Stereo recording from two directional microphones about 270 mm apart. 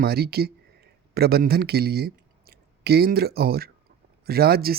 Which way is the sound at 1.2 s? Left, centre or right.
Right.